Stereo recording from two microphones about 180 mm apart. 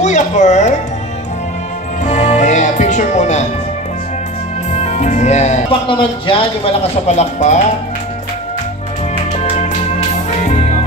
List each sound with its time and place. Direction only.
0.0 s music: 40° left (ahead or behind)
2.0 s music: 40° left (ahead or behind)
4.7 s speech: 40° left (ahead or behind)
9.4 s music: 40° left (ahead or behind)